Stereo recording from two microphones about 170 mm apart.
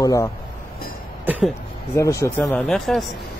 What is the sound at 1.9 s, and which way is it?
Speech, 15° left (ahead or behind).